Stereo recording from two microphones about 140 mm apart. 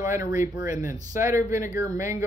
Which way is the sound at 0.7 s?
65° left (ahead or behind).